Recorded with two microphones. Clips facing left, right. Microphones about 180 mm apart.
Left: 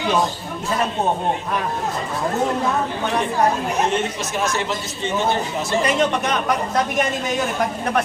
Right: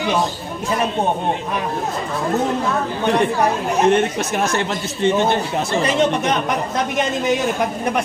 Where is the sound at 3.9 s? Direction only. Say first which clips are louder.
Right 6 dB; 60° right (ahead or behind).